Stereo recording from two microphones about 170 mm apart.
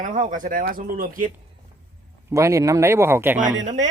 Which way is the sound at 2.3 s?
20° right (ahead or behind).